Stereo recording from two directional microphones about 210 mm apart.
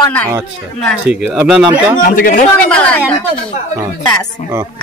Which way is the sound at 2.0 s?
40° left (ahead or behind).